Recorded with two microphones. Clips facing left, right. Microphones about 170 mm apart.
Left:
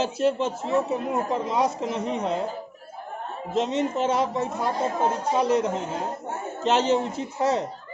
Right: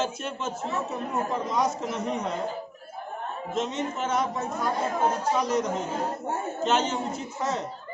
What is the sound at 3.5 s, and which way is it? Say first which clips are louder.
A woman's voice: left 6 dB; 35° left (ahead or behind).